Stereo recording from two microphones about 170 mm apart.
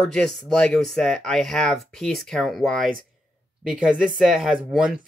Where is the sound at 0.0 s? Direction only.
5° left (ahead or behind).